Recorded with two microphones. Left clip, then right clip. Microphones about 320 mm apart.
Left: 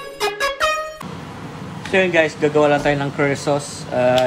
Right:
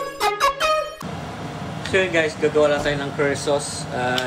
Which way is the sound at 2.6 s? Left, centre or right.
Left.